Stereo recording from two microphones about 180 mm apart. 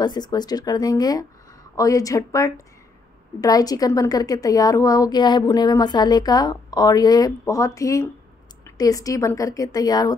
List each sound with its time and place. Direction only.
0.0 s a woman's voice: 25° left (ahead or behind)